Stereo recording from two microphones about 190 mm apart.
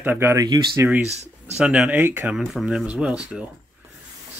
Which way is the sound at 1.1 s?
35° right (ahead or behind).